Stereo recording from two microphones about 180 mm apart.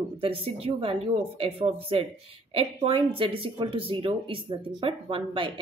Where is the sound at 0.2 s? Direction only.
30° right (ahead or behind).